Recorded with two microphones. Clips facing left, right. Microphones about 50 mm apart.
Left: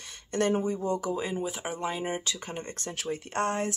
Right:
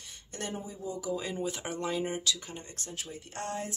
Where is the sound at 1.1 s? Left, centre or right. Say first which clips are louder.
Left 3 dB; centre.